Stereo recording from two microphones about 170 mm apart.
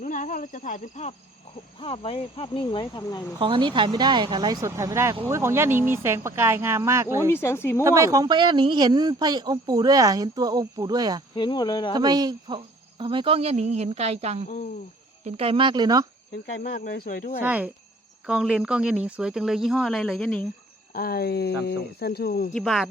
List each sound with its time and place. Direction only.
0.0 s speech: 50° left (ahead or behind)
1.8 s speech: 35° left (ahead or behind)
3.3 s speech: 30° right (ahead or behind)
7.3 s speech: 15° left (ahead or behind)
7.9 s speech: 20° right (ahead or behind)
11.3 s speech: 25° left (ahead or behind)
11.9 s cricket: 25° right (ahead or behind); by 14.4 s 40° right (ahead or behind)
15.2 s speech: 35° right (ahead or behind)
16.6 s speech: 55° left (ahead or behind)
17.4 s speech: 10° right (ahead or behind)
20.9 s speech: 60° left (ahead or behind)
22.5 s speech: centre (ahead or behind)